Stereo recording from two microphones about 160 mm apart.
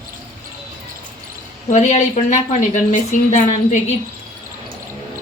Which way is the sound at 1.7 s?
50° left (ahead or behind).